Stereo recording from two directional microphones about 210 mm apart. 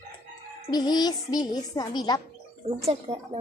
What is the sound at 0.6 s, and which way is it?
Speech, 20° left (ahead or behind).